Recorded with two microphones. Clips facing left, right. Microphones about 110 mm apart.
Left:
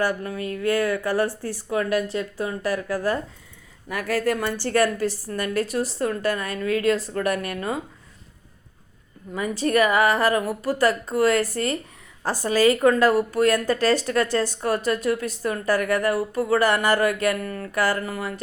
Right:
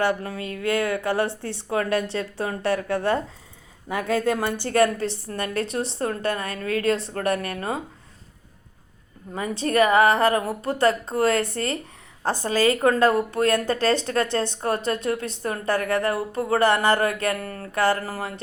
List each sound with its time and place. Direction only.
0.0 s speech: 30° right (ahead or behind)
9.3 s speech: 35° right (ahead or behind)